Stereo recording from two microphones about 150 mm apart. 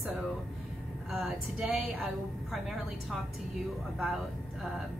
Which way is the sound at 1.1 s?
Centre (ahead or behind).